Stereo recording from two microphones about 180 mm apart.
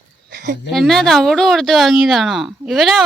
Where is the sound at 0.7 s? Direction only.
Centre (ahead or behind).